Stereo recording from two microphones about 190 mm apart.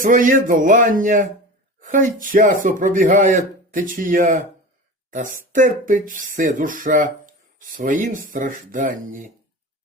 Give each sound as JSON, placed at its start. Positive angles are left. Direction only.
{"t": 0.0, "sound": "speech", "side_deg": -45}